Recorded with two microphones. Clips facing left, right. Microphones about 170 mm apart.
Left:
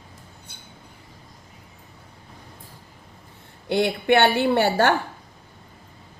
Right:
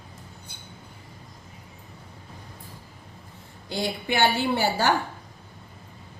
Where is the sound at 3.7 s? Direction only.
65° left (ahead or behind).